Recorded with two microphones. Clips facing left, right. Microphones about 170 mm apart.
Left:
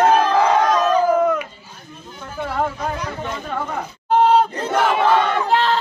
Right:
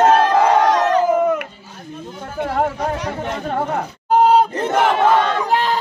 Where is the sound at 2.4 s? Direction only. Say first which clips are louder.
Right 3 dB; 70° right (ahead or behind).